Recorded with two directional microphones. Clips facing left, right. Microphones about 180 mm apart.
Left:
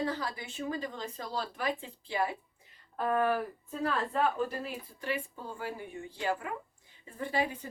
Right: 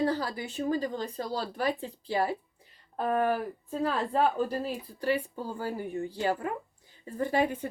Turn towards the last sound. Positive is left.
turn(degrees=-55)  # may be behind; listen again after turning